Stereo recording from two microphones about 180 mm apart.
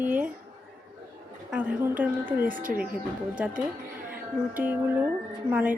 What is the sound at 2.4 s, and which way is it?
Speech, 50° right (ahead or behind).